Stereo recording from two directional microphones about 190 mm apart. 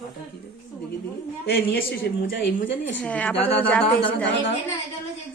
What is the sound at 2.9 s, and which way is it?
Speech, 5° left (ahead or behind).